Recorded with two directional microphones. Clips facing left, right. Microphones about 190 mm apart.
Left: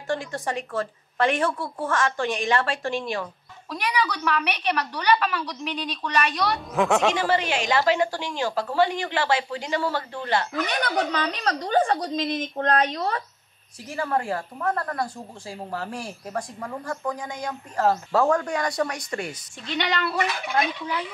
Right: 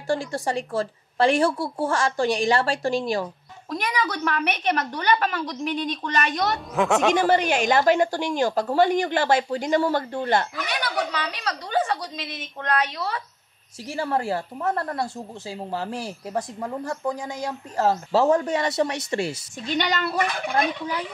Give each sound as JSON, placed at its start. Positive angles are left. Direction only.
{"t": 0.1, "sound": "a woman's voice", "side_deg": -35}
{"t": 3.7, "sound": "a woman's voice", "side_deg": -50}
{"t": 6.7, "sound": "speech", "side_deg": 0}
{"t": 7.2, "sound": "a woman's voice", "side_deg": -45}
{"t": 10.5, "sound": "a woman's voice", "side_deg": 45}
{"t": 13.9, "sound": "speech", "side_deg": -30}
{"t": 19.7, "sound": "a woman's voice", "side_deg": -40}